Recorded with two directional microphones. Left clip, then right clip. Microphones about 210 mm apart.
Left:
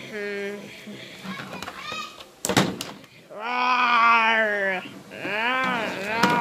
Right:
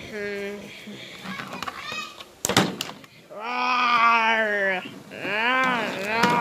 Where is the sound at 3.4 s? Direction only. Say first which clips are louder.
Left 1 dB; centre (ahead or behind).